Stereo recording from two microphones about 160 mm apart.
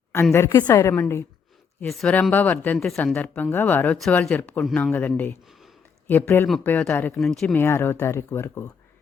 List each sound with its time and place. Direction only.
0.3 s speech: 15° left (ahead or behind)
1.8 s speech: 5° left (ahead or behind)
5.5 s a sound: centre (ahead or behind)
6.1 s speech: 10° left (ahead or behind)